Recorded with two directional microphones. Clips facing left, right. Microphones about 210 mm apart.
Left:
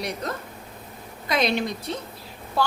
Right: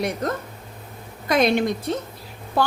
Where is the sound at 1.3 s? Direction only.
50° right (ahead or behind).